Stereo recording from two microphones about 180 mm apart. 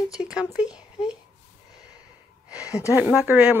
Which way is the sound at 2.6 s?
15° left (ahead or behind).